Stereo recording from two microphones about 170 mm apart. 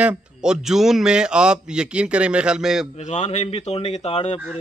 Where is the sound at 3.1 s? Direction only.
40° left (ahead or behind).